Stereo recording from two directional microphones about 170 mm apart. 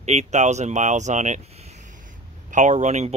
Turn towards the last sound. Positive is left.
turn(degrees=-45)  # may be behind; listen again after turning